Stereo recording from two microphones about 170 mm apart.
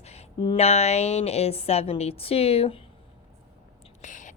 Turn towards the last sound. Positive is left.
turn(degrees=50)  # may be behind; listen again after turning